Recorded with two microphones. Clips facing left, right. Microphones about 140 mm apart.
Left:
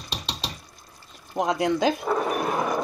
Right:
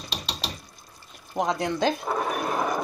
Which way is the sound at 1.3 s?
5° left (ahead or behind).